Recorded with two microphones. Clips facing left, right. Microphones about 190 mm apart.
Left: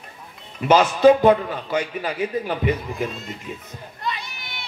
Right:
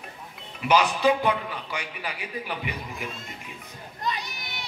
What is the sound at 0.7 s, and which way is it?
A man's voice, 45° left (ahead or behind).